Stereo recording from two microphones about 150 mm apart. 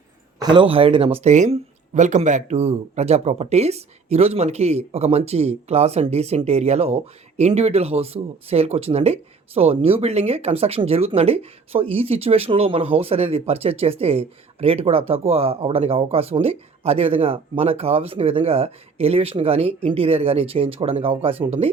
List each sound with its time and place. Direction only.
0.3 s speech: 30° right (ahead or behind)